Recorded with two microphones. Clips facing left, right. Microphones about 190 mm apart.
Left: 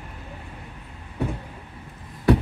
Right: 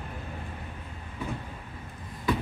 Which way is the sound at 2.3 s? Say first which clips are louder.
Left 9 dB; 70° left (ahead or behind).